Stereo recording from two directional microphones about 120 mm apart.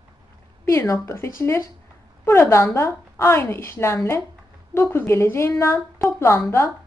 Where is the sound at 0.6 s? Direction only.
25° left (ahead or behind).